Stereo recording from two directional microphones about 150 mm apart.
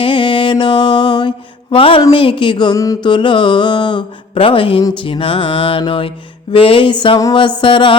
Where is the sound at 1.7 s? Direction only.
35° left (ahead or behind).